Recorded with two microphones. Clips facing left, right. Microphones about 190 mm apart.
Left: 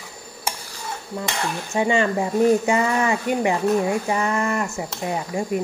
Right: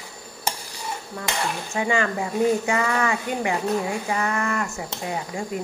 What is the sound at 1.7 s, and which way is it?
Speech, 25° left (ahead or behind).